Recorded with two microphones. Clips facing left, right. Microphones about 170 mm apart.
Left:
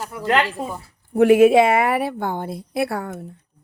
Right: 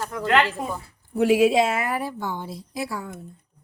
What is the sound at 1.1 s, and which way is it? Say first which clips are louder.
A woman's voice: left 6 dB; 55° left (ahead or behind).